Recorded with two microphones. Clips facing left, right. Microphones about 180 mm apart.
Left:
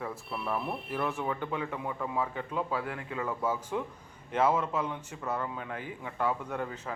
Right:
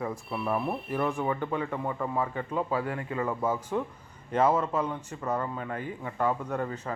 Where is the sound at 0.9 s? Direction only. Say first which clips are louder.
Right 3 dB; 5° left (ahead or behind).